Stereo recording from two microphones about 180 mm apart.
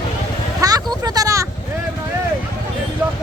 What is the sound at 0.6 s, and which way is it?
Vehicle, 20° right (ahead or behind).